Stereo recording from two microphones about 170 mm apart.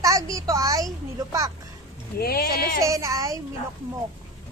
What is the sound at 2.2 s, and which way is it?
Speech, 65° left (ahead or behind).